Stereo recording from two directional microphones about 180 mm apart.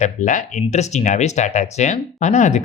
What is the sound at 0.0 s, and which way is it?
Speech, 45° left (ahead or behind).